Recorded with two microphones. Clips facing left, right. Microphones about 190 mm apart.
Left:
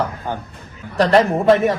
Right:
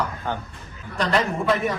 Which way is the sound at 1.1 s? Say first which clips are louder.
Left 9 dB; 30° left (ahead or behind).